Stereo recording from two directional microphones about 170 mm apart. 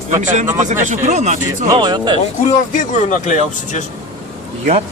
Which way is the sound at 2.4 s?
45° left (ahead or behind).